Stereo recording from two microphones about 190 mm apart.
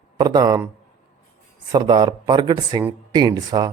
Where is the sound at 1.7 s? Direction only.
20° right (ahead or behind).